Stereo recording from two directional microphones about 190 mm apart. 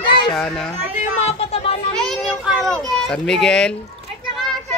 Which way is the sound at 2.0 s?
Centre (ahead or behind).